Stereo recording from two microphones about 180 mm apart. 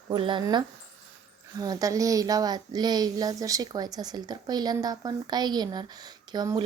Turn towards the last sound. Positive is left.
turn(degrees=-25)  # may be behind; listen again after turning